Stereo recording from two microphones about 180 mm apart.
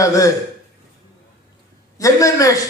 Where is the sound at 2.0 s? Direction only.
20° left (ahead or behind).